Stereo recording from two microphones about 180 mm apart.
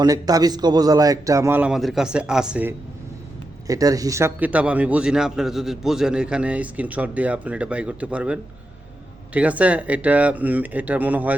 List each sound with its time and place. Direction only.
0.0 s speech: 20° right (ahead or behind)
3.7 s speech: 20° right (ahead or behind)